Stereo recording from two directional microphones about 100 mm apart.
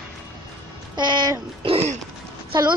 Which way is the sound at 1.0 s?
50° right (ahead or behind).